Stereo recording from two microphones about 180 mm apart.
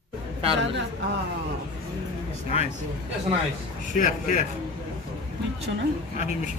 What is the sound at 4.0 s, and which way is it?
Speech, 45° left (ahead or behind).